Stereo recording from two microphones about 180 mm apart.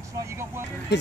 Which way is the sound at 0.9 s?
75° left (ahead or behind).